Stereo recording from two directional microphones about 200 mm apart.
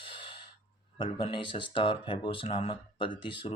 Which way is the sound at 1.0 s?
25° left (ahead or behind).